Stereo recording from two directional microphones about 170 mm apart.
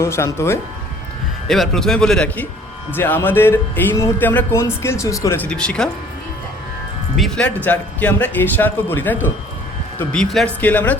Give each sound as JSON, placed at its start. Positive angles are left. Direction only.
{"t": 0.0, "sound": "speech", "side_deg": 15}
{"t": 1.5, "sound": "a man's voice", "side_deg": 0}
{"t": 5.5, "sound": "a man's voice", "side_deg": 5}
{"t": 7.2, "sound": "speech", "side_deg": 5}